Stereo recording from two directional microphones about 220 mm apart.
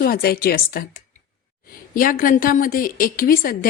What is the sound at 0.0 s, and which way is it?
A woman's voice, 40° left (ahead or behind).